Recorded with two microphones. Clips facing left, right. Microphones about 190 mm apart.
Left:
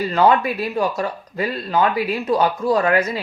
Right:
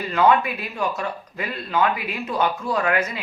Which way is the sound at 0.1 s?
35° left (ahead or behind).